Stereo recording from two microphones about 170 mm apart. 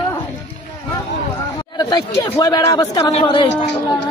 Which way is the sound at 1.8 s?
20° left (ahead or behind).